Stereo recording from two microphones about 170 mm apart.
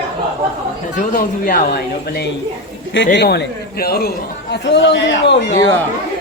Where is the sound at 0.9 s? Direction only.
55° left (ahead or behind).